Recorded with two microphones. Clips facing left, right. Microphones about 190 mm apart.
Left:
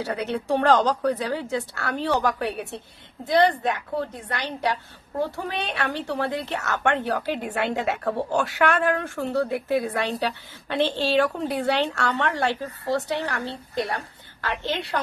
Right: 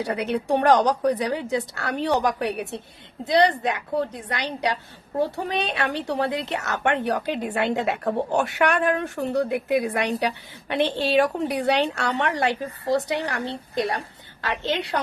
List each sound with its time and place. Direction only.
0.0 s a woman's voice: 15° right (ahead or behind)